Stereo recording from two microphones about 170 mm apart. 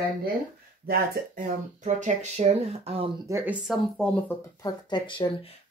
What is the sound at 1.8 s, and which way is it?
Speech, 45° right (ahead or behind).